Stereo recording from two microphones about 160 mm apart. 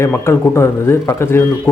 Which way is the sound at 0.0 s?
15° left (ahead or behind).